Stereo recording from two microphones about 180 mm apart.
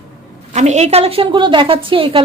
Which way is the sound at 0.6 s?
40° right (ahead or behind).